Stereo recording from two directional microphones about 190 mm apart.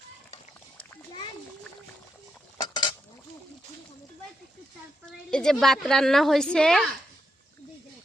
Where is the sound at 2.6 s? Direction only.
25° left (ahead or behind).